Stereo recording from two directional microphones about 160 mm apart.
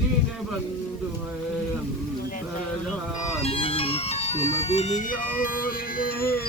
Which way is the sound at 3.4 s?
35° left (ahead or behind).